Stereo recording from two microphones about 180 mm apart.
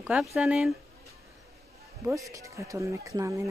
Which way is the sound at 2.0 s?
15° right (ahead or behind).